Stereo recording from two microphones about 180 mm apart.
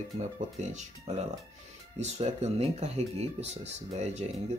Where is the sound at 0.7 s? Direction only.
40° right (ahead or behind).